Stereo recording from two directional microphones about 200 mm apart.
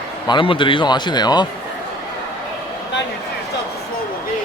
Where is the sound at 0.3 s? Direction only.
25° left (ahead or behind).